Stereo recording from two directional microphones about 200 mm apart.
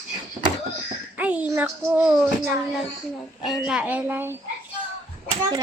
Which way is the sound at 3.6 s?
5° right (ahead or behind).